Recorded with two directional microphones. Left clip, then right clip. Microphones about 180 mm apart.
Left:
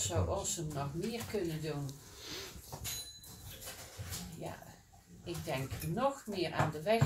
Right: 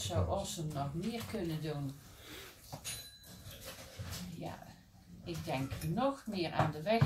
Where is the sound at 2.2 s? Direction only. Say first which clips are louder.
Left 11 dB; 15° left (ahead or behind).